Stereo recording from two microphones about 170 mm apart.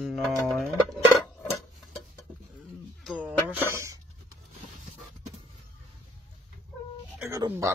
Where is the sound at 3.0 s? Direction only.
10° right (ahead or behind).